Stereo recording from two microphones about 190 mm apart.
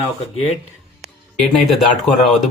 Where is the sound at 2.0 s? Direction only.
Centre (ahead or behind).